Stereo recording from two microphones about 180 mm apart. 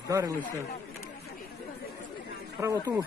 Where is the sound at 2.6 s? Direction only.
10° right (ahead or behind).